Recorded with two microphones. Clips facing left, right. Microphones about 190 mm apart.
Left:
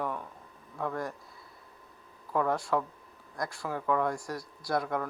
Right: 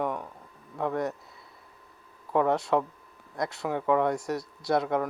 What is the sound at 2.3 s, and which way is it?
Speech, 20° right (ahead or behind).